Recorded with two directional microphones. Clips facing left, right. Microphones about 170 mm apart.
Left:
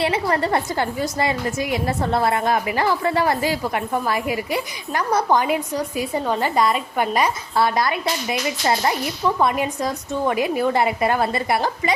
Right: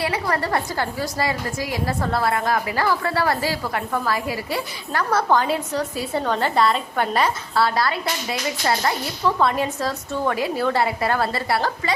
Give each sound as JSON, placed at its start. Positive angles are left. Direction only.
{"t": 0.0, "sound": "a woman's voice", "side_deg": 25}